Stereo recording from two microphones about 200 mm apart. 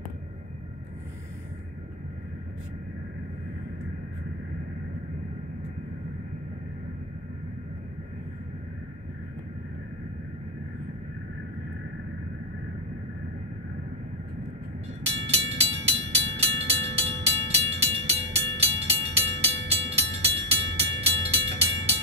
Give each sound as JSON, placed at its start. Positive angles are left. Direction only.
{"t": 15.0, "sound": "vehicle", "side_deg": -30}
{"t": 19.7, "sound": "music", "side_deg": -30}